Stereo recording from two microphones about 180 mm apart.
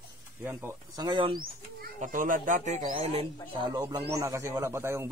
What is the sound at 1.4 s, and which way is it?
Speech, 50° right (ahead or behind).